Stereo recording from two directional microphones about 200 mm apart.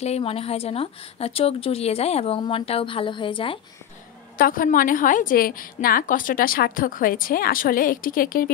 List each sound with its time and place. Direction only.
0.0 s speech: 30° left (ahead or behind)
4.4 s a woman's voice: 45° left (ahead or behind)